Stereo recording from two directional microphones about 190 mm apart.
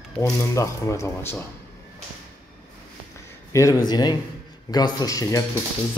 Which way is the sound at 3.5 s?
15° left (ahead or behind).